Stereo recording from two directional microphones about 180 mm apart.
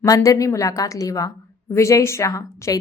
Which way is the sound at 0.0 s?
20° left (ahead or behind).